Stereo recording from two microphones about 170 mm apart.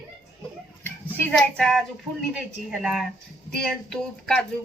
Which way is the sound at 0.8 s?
5° left (ahead or behind).